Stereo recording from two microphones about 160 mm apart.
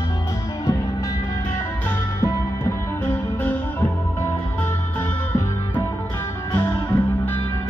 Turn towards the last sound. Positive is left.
turn(degrees=15)  # may be behind; listen again after turning